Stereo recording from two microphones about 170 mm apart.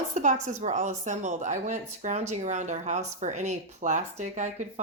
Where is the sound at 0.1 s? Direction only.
45° right (ahead or behind).